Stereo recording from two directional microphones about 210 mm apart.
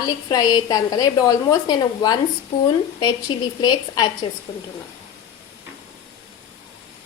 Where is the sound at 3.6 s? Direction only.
20° left (ahead or behind).